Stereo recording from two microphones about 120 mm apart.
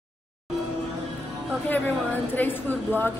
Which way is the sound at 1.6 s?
15° left (ahead or behind).